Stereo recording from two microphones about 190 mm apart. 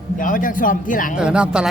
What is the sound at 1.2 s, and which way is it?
Speech, 5° right (ahead or behind).